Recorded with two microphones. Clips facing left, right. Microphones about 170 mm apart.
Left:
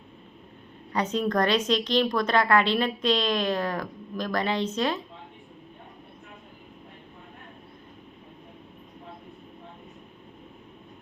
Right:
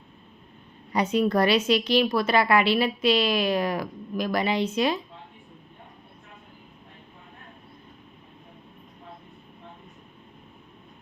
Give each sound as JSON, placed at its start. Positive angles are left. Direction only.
{"t": 0.9, "sound": "a woman's voice", "side_deg": -10}